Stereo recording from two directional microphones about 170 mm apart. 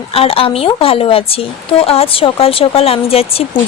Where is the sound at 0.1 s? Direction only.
35° left (ahead or behind).